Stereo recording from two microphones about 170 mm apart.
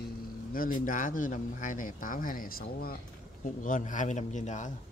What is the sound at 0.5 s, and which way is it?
Speech, 55° left (ahead or behind).